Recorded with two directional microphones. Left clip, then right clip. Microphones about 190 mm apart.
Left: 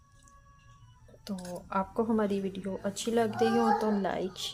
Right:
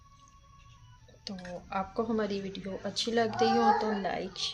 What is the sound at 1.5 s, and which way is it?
A child's voice, 15° left (ahead or behind).